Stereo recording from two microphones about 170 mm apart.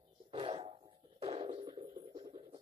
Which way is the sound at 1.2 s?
35° right (ahead or behind).